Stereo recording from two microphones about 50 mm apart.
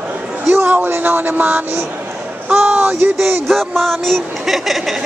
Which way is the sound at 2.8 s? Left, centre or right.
Right.